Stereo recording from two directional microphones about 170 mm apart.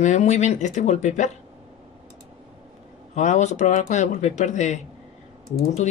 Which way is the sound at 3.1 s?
45° left (ahead or behind).